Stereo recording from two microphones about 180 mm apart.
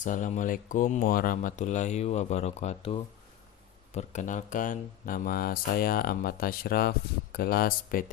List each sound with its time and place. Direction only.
0.0 s speech: 45° left (ahead or behind)